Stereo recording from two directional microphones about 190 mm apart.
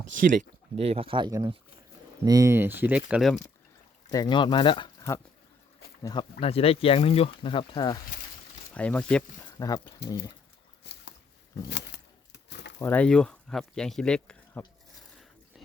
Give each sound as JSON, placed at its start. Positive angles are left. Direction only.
{"t": 0.8, "sound": "speech", "side_deg": -30}
{"t": 4.1, "sound": "speech", "side_deg": 20}
{"t": 6.4, "sound": "speech", "side_deg": 30}
{"t": 8.7, "sound": "speech", "side_deg": 5}
{"t": 9.6, "sound": "speech", "side_deg": 20}
{"t": 12.5, "sound": "a sound", "side_deg": 65}
{"t": 12.8, "sound": "speech", "side_deg": 10}